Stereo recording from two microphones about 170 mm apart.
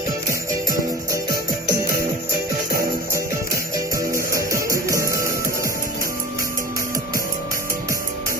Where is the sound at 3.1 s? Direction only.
20° right (ahead or behind).